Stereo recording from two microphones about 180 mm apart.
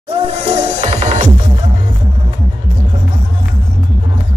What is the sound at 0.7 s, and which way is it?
Music, 40° right (ahead or behind).